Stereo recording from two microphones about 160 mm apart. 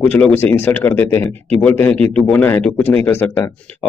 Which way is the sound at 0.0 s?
10° left (ahead or behind).